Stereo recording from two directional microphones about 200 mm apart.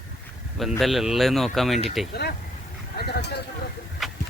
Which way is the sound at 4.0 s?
Centre (ahead or behind).